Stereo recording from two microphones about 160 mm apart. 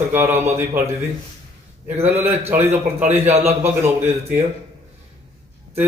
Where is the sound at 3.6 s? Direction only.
15° right (ahead or behind).